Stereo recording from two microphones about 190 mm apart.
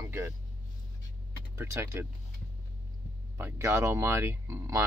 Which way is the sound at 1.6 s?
15° right (ahead or behind).